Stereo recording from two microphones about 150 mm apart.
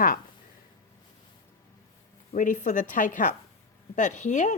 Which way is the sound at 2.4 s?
60° left (ahead or behind).